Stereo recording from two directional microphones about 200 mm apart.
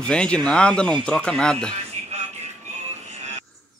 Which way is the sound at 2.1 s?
35° right (ahead or behind).